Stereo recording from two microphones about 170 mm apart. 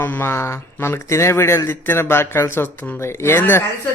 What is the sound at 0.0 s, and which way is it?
Speech, 15° left (ahead or behind).